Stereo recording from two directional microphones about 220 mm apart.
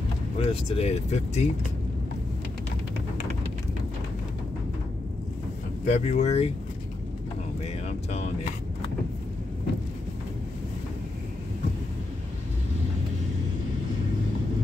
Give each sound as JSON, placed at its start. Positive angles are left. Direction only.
{"t": 0.4, "sound": "speech", "side_deg": 25}
{"t": 5.9, "sound": "speech", "side_deg": 30}